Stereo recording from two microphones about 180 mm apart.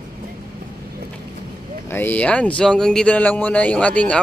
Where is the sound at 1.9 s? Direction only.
10° left (ahead or behind).